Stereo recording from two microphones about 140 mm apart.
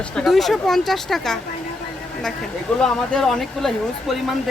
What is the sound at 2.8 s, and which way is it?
Speech, 5° left (ahead or behind).